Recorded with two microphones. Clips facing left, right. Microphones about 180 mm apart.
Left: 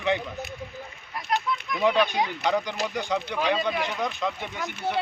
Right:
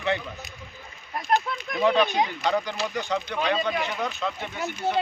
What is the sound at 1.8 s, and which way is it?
Speech, 10° left (ahead or behind).